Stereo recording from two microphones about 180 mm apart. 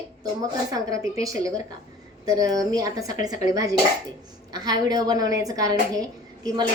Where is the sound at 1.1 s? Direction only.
20° right (ahead or behind).